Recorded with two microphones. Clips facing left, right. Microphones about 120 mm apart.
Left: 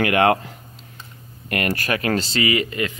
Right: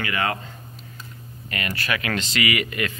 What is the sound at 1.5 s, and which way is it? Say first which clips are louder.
Speech: left 5 dB; 50° left (ahead or behind).